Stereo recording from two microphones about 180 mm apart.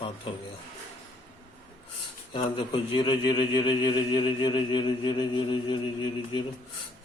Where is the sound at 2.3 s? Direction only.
25° left (ahead or behind).